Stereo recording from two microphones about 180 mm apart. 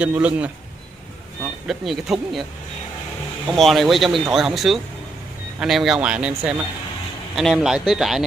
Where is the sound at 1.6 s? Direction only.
Centre (ahead or behind).